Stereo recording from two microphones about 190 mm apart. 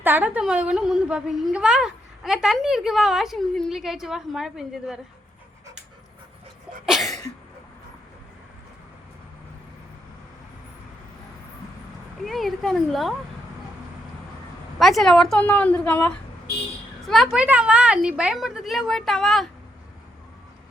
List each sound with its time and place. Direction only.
0.0 s a woman's voice: 10° right (ahead or behind)
6.8 s sneeze: centre (ahead or behind)
12.2 s a woman's voice: centre (ahead or behind)
14.8 s a woman's voice: centre (ahead or behind)
17.1 s a woman's voice: centre (ahead or behind)